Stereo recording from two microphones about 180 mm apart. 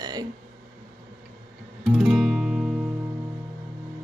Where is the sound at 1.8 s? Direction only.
5° right (ahead or behind).